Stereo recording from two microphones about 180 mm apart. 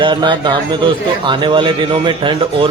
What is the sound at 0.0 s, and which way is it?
A man's voice, 25° right (ahead or behind).